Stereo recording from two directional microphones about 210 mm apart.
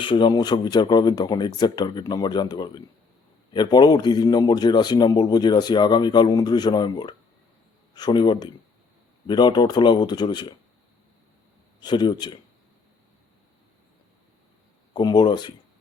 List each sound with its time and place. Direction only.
0.0 s a man's voice: 20° left (ahead or behind)
11.8 s a man's voice: 20° left (ahead or behind)
14.9 s a man's voice: 20° left (ahead or behind)